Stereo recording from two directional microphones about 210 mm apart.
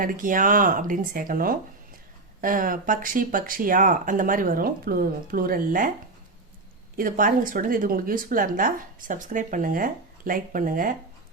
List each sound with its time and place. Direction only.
0.0 s speech: 40° right (ahead or behind)
6.9 s speech: 40° right (ahead or behind)